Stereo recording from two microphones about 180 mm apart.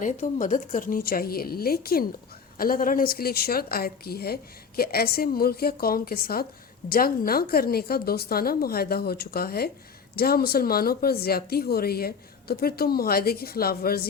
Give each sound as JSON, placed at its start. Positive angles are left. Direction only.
{"t": 0.0, "sound": "speech", "side_deg": 45}